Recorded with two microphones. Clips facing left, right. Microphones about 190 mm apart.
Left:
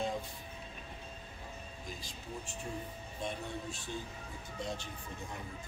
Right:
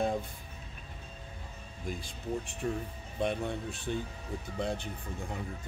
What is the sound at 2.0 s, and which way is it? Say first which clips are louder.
Speech: right 8 dB; 60° right (ahead or behind).